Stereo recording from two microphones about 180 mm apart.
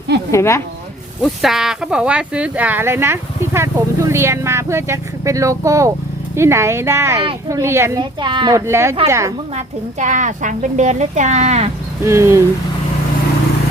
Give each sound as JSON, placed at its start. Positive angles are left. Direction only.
{"t": 0.3, "sound": "speech", "side_deg": 15}
{"t": 1.2, "sound": "speech", "side_deg": 0}
{"t": 9.6, "sound": "a woman's voice", "side_deg": -45}
{"t": 12.0, "sound": "speech", "side_deg": -15}